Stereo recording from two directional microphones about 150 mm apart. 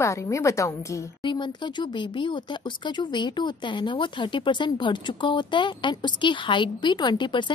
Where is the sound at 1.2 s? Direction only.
30° left (ahead or behind).